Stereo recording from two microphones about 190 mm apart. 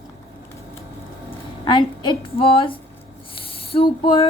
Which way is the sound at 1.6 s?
25° left (ahead or behind).